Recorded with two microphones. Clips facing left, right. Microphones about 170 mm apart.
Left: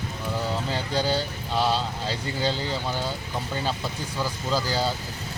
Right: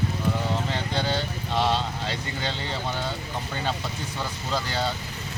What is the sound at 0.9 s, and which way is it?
Vehicle, 35° left (ahead or behind).